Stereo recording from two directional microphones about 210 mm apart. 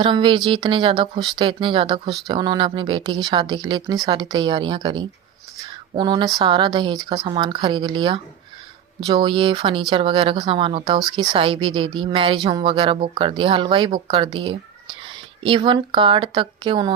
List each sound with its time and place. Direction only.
0.0 s speech: 25° right (ahead or behind)
15.4 s speech: 25° right (ahead or behind)